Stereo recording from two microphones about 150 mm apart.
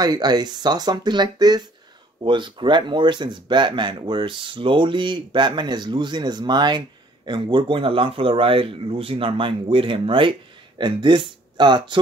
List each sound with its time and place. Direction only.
0.0 s speech: 25° right (ahead or behind)